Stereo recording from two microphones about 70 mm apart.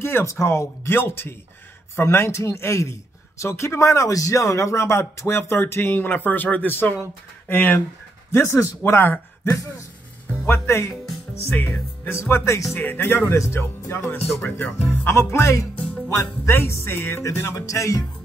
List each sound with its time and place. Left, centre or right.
0.0 s a man's voice: left
12.1 s a man's voice: left
12.7 s speech: left
13.3 s a man's voice: left